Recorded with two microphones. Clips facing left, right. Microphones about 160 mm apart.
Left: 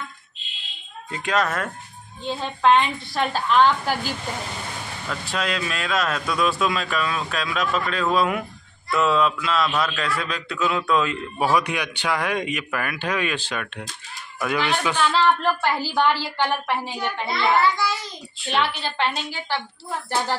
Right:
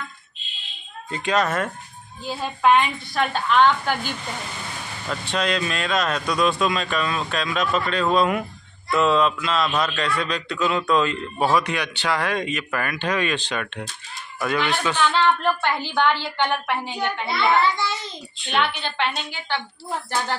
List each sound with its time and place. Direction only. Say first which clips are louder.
1.1 s a man's voice: right 2 dB; centre (ahead or behind)
5.2 s a man's voice: right 3 dB; 5° left (ahead or behind)
17.6 s a child's voice: left 1 dB; 20° right (ahead or behind)
18.4 s a man's voice: even; centre (ahead or behind)